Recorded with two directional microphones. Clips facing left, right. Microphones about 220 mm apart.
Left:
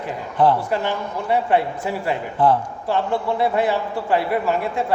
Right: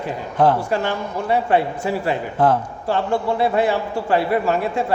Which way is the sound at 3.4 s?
30° right (ahead or behind).